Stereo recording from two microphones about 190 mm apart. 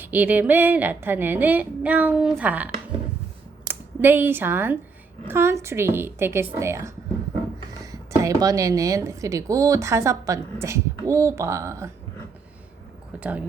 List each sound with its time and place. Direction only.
0.0 s a woman's voice: 10° right (ahead or behind)
8.2 s a woman's voice: 15° right (ahead or behind)
13.1 s speech: 5° right (ahead or behind)